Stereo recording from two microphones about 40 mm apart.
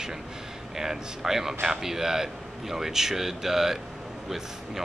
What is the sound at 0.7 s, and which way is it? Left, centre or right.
Speech, centre.